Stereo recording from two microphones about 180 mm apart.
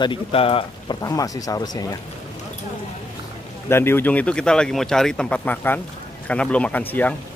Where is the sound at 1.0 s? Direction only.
20° left (ahead or behind).